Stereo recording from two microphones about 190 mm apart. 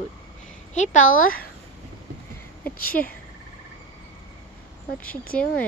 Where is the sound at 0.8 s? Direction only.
45° left (ahead or behind).